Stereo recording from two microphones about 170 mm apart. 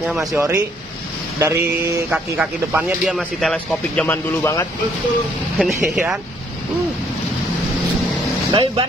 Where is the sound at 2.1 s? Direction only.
5° right (ahead or behind).